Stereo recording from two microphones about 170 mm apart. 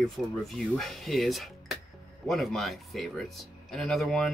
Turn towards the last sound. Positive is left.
turn(degrees=5)  # may be behind; listen again after turning